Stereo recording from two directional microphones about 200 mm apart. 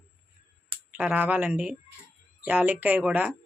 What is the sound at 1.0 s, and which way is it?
Speech, 5° right (ahead or behind).